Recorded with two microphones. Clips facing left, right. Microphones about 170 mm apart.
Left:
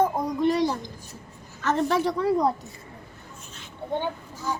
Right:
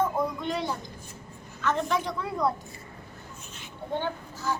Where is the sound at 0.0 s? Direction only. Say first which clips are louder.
Left 5 dB; 35° left (ahead or behind).